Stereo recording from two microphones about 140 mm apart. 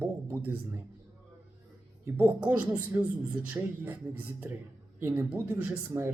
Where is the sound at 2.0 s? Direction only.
10° right (ahead or behind).